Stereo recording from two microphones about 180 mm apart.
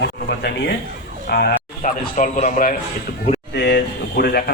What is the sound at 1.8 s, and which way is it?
A man's voice, 45° left (ahead or behind).